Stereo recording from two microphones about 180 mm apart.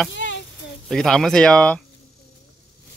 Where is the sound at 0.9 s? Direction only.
5° left (ahead or behind).